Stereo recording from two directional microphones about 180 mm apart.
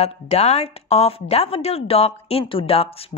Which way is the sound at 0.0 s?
35° left (ahead or behind).